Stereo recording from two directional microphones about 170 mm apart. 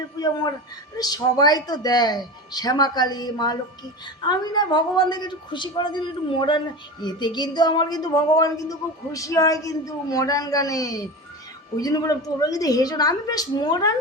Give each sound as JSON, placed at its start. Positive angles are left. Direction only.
{"t": 0.9, "sound": "speech", "side_deg": 20}